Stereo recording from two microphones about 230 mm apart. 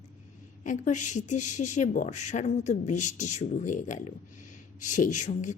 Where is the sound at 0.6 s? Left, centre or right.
Left.